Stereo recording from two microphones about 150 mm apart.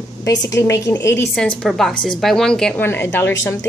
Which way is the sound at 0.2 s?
25° left (ahead or behind).